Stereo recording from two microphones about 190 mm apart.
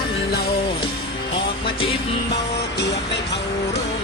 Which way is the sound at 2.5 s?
65° left (ahead or behind).